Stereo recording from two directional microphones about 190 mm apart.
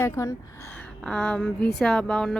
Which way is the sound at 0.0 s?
15° left (ahead or behind).